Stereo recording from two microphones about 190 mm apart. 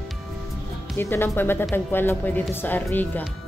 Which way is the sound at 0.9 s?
10° left (ahead or behind).